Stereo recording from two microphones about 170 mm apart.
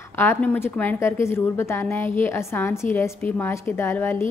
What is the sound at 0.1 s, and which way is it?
A woman's voice, 15° left (ahead or behind).